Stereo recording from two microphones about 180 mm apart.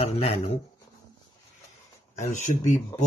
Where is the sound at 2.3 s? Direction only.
45° left (ahead or behind).